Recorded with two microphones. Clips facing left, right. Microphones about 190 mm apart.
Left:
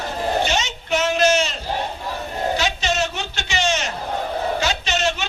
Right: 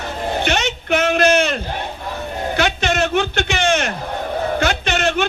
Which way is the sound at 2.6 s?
55° right (ahead or behind).